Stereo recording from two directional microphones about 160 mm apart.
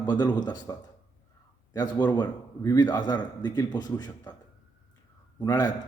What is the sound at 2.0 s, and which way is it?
A man's voice, 30° left (ahead or behind).